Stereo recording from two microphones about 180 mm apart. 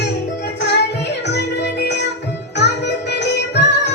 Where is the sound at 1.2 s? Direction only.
70° left (ahead or behind).